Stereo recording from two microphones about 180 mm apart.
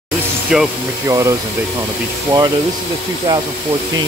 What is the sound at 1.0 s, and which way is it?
Speech, 20° right (ahead or behind).